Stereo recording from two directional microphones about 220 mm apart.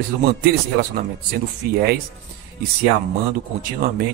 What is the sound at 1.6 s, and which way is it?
Speech, 45° right (ahead or behind).